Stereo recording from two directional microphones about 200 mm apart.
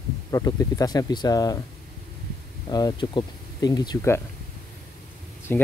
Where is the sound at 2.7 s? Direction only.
20° left (ahead or behind).